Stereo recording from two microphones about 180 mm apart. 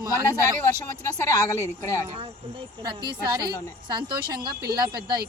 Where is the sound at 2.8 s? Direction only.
25° right (ahead or behind).